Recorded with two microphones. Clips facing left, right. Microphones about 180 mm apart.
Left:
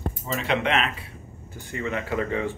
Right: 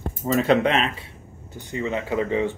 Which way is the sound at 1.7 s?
25° right (ahead or behind).